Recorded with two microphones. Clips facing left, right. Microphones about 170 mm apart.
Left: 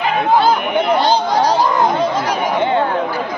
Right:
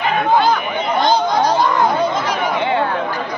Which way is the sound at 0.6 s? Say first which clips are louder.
Left 5 dB; 65° left (ahead or behind).